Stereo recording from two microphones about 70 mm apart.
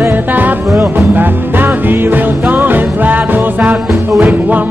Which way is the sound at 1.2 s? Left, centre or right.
Right.